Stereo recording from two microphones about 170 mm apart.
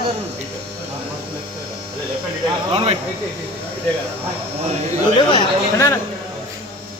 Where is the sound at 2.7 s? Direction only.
35° right (ahead or behind).